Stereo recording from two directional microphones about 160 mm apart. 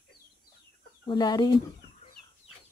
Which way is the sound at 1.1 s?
25° left (ahead or behind).